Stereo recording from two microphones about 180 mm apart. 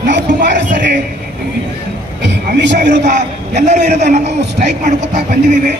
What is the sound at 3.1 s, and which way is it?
A man's voice, 40° right (ahead or behind).